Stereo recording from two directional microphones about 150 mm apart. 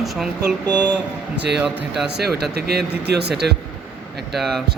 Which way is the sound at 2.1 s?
90° right.